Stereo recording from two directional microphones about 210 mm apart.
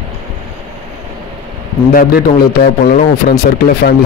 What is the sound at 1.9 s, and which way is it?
Speech, 45° left (ahead or behind).